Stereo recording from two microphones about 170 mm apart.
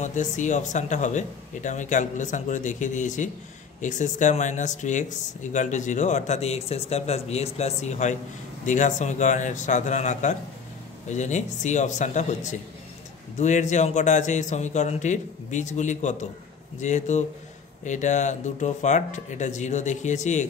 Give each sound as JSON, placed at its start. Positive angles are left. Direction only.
{"t": 0.0, "sound": "a man's voice", "side_deg": 45}